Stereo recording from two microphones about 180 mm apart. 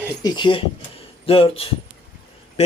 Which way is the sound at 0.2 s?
25° left (ahead or behind).